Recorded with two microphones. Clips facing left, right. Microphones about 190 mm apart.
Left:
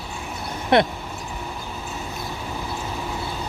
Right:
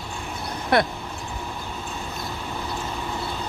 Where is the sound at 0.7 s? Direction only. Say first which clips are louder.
Left 3 dB; 25° left (ahead or behind).